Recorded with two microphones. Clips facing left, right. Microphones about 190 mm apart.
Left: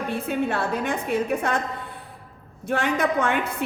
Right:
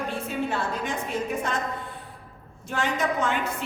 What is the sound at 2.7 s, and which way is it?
Speech, 60° left (ahead or behind).